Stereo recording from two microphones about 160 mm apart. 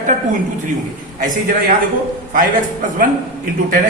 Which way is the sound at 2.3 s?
60° right (ahead or behind).